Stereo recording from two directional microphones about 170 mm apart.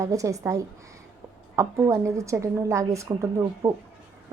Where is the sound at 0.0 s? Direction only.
20° right (ahead or behind).